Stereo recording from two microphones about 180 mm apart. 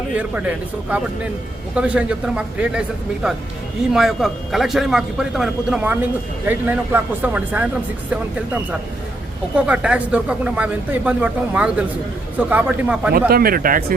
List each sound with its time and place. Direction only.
0.2 s a man's voice: 10° right (ahead or behind)
3.9 s a man's voice: centre (ahead or behind)
13.1 s speech: 55° right (ahead or behind)